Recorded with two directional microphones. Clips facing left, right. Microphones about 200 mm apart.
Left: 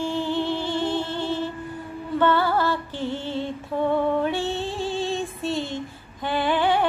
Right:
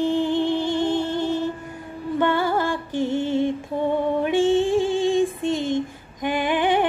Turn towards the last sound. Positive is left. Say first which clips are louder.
# right 1 dB
turn(degrees=-15)  # may be behind; listen again after turning